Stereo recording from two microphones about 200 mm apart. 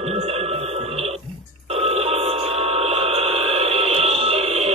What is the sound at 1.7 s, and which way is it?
Telephone, 30° right (ahead or behind).